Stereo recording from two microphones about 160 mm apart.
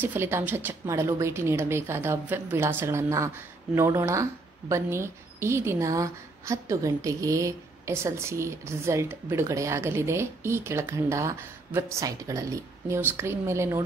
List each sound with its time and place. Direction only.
0.0 s a woman's voice: 15° right (ahead or behind)